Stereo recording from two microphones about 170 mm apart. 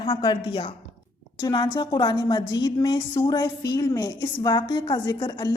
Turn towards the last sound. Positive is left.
turn(degrees=25)  # may be behind; listen again after turning